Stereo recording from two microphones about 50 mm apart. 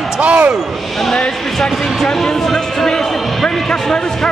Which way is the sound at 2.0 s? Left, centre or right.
Centre.